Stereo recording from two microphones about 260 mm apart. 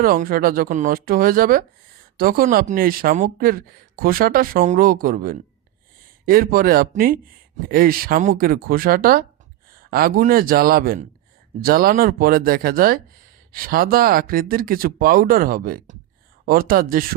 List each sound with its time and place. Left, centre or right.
0.0 s speech: right